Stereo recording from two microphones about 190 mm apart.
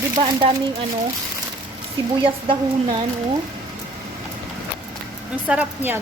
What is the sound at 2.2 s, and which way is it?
Speech, 25° right (ahead or behind).